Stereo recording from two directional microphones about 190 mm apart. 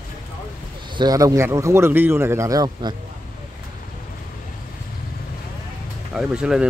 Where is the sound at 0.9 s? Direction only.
20° right (ahead or behind).